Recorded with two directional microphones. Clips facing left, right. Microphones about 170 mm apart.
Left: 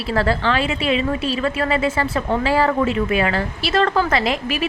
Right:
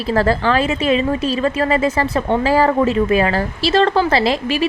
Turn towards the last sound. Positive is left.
turn(degrees=-30)  # may be behind; listen again after turning